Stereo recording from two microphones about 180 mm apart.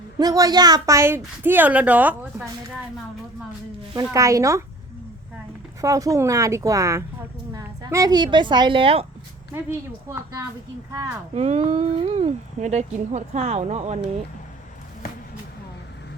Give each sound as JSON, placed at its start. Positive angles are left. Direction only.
{"t": 0.2, "sound": "speech", "side_deg": -20}
{"t": 4.1, "sound": "speech", "side_deg": -15}
{"t": 5.8, "sound": "a woman's voice", "side_deg": -20}
{"t": 9.5, "sound": "speech", "side_deg": -15}
{"t": 11.3, "sound": "speech", "side_deg": -35}